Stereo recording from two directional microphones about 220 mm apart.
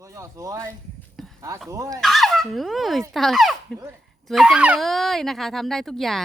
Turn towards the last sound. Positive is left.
turn(degrees=0)  # may be behind; listen again after turning